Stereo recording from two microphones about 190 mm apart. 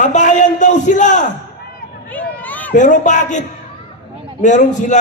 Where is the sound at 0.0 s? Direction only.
40° left (ahead or behind).